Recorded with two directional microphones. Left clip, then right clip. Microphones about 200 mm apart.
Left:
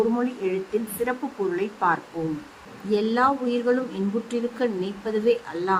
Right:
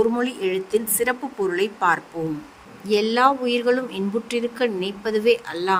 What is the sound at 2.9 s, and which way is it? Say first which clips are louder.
Speech: right 4 dB; 50° right (ahead or behind).